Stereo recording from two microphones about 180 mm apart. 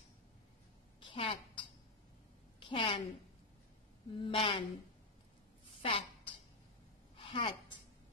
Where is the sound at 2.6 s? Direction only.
30° left (ahead or behind).